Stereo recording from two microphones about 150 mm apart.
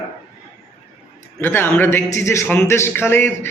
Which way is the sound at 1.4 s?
15° left (ahead or behind).